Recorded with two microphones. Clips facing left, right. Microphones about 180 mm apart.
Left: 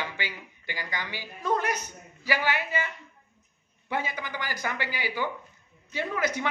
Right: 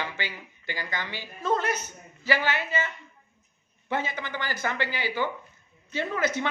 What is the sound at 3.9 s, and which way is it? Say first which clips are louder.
A woman's voice: right 1 dB; 10° left (ahead or behind).